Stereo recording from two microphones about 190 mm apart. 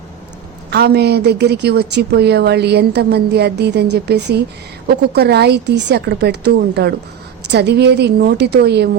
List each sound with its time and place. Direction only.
0.7 s a woman's voice: 60° right (ahead or behind)